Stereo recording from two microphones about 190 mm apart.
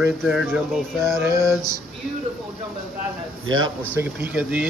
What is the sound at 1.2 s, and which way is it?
Speech, 15° right (ahead or behind).